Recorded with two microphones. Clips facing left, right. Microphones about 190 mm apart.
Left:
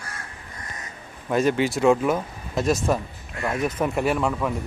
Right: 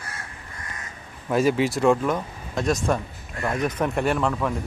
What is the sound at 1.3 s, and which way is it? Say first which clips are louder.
Speech: even; 5° right (ahead or behind).